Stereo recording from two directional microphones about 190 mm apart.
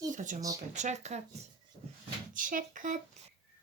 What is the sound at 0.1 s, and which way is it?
A child's voice, 40° right (ahead or behind).